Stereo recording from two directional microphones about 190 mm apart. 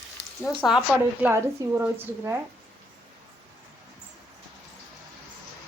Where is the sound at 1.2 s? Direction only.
15° right (ahead or behind).